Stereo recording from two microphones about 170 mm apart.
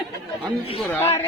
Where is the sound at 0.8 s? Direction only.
15° left (ahead or behind).